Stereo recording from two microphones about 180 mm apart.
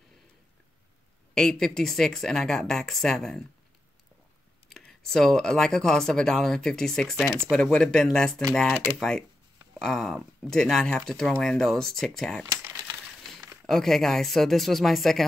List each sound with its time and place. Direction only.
1.3 s speech: centre (ahead or behind)
4.6 s speech: 5° left (ahead or behind)
12.4 s crumpling: 15° right (ahead or behind)
13.0 s a sound: centre (ahead or behind)
13.7 s speech: centre (ahead or behind)